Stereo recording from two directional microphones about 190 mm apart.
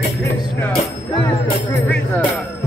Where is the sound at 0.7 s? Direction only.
30° left (ahead or behind).